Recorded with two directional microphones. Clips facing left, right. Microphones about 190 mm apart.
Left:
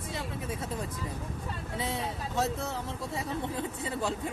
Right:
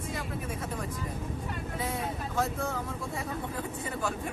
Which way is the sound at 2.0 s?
25° left (ahead or behind).